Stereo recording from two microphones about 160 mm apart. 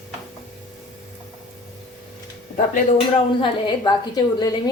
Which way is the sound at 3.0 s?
30° left (ahead or behind).